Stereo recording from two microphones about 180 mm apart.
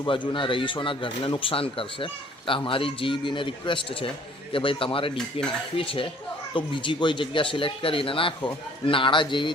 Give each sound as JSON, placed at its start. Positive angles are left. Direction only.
{"t": 0.0, "sound": "speech", "side_deg": 25}